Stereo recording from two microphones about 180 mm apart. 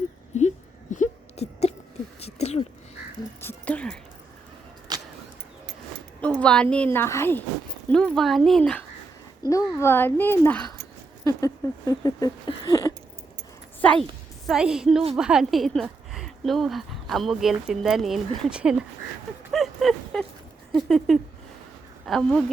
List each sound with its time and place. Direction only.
0.3 s a sound: 40° left (ahead or behind)
3.4 s whispering: 5° left (ahead or behind)
4.9 s vehicle: 20° right (ahead or behind)
6.4 s speech: 5° left (ahead or behind)
9.5 s speech: 15° left (ahead or behind)
11.2 s a sound: 15° left (ahead or behind)
13.8 s a woman's voice: centre (ahead or behind)
19.5 s a sound: centre (ahead or behind)
22.0 s speech: centre (ahead or behind)